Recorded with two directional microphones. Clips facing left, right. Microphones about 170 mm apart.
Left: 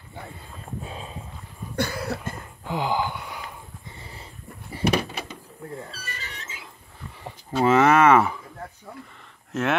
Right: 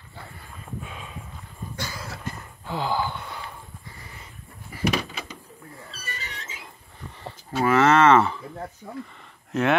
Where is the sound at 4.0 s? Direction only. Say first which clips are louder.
Left 2 dB; 30° left (ahead or behind).